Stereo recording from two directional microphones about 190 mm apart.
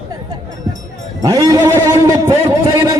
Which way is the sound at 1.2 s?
20° right (ahead or behind).